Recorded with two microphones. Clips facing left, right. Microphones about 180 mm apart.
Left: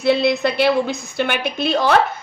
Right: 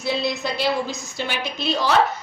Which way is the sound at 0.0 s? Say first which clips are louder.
Left 8 dB; 65° left (ahead or behind).